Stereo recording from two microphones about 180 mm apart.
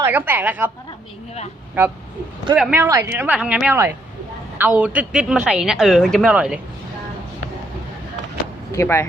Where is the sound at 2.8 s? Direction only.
15° right (ahead or behind).